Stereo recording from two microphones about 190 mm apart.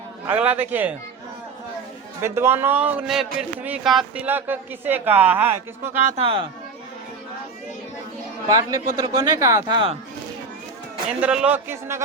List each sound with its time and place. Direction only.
0.3 s speech: 10° right (ahead or behind)
2.2 s speech: 15° right (ahead or behind)
6.2 s a man's voice: 30° right (ahead or behind)
8.4 s a man's voice: 20° right (ahead or behind)
11.2 s speech: 5° right (ahead or behind)